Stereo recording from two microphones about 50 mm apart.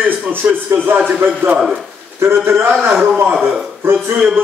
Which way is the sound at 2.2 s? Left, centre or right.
Right.